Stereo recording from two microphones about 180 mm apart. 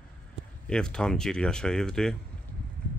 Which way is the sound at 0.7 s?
5° left (ahead or behind).